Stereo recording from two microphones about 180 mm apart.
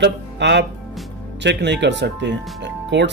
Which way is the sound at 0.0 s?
75° right (ahead or behind).